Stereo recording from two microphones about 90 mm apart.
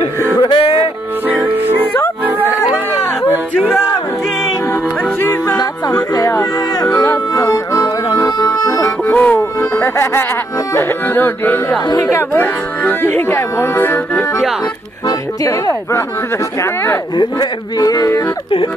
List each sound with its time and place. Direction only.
0.4 s music: 70° left (ahead or behind)
5.2 s music: 30° left (ahead or behind)
5.6 s music: 45° left (ahead or behind)
9.0 s music: 20° left (ahead or behind)
9.6 s music: 30° left (ahead or behind)
12.0 s speech: 30° left (ahead or behind)
15.0 s speech: 40° left (ahead or behind)
17.2 s speech: 50° left (ahead or behind)